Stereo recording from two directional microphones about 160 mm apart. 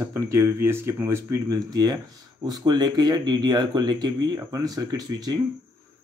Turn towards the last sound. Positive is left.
turn(degrees=-25)  # may be behind; listen again after turning